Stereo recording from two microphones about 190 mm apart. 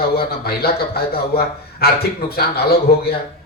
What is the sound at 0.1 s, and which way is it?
Speech, 55° left (ahead or behind).